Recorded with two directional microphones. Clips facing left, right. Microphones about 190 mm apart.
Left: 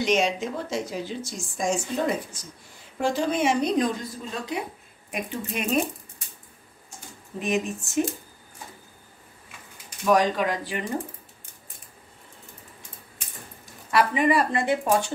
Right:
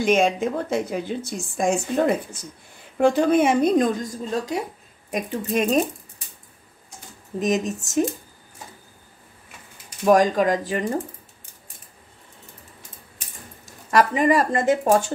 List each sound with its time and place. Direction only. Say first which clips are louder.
0.0 s a woman's voice: right 4 dB; 50° right (ahead or behind)
7.3 s speech: right 4 dB; 40° right (ahead or behind)
10.0 s a woman's voice: right 5 dB; 45° right (ahead or behind)
13.8 s a woman's voice: right 3 dB; 40° right (ahead or behind)